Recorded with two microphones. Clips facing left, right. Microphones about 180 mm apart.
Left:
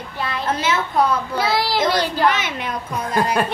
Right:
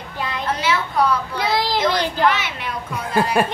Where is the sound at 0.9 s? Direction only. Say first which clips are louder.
Left 1 dB; 25° left (ahead or behind).